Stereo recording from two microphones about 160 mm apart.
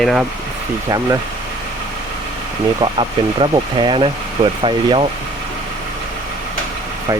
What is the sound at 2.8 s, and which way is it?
Speech, 30° right (ahead or behind).